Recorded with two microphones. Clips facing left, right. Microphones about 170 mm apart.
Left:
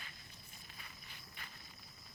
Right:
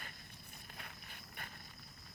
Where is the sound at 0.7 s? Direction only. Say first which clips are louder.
Right 5 dB; 55° right (ahead or behind).